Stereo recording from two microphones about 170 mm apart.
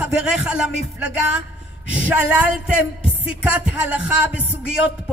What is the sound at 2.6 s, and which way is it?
A man's voice, 5° right (ahead or behind).